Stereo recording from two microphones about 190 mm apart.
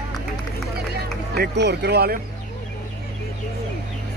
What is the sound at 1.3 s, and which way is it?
Speech, 60° right (ahead or behind).